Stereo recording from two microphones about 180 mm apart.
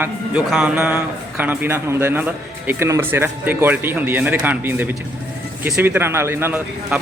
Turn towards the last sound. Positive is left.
turn(degrees=-10)  # may be behind; listen again after turning